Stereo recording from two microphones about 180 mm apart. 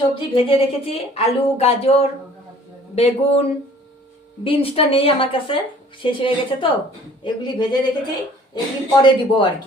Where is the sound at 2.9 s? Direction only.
35° left (ahead or behind).